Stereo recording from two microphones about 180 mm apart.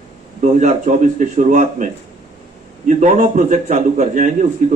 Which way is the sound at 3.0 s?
40° right (ahead or behind).